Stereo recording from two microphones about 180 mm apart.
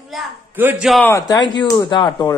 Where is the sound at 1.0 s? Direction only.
15° left (ahead or behind).